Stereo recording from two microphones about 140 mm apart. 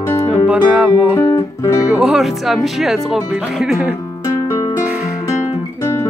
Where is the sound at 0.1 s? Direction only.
20° left (ahead or behind).